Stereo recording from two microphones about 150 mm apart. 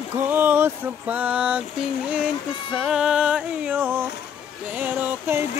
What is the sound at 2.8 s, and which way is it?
Music, centre (ahead or behind).